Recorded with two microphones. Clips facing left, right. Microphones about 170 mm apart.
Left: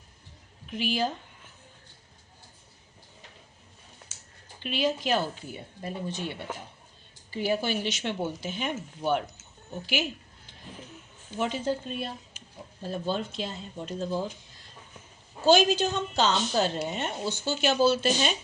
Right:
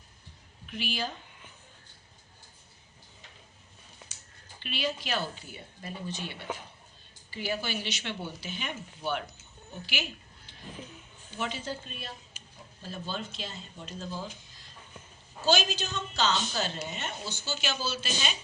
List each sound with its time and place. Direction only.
0.7 s speech: 45° left (ahead or behind)
4.6 s speech: 45° left (ahead or behind)
7.3 s speech: 50° left (ahead or behind)
11.3 s a woman's voice: 45° left (ahead or behind)
15.4 s a woman's voice: 55° left (ahead or behind)